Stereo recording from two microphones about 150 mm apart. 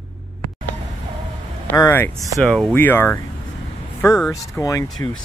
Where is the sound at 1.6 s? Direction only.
15° left (ahead or behind).